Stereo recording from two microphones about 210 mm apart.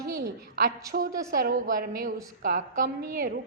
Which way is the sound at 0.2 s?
45° right (ahead or behind).